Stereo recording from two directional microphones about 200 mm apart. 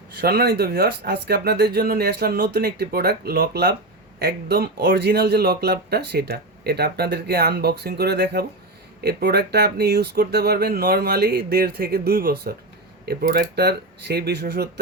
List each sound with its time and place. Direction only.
0.2 s speech: 50° right (ahead or behind)